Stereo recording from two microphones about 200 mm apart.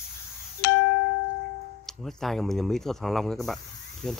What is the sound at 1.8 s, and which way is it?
Speech, centre (ahead or behind).